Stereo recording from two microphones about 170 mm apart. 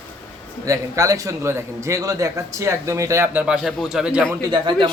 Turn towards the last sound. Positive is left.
turn(degrees=-25)  # may be behind; listen again after turning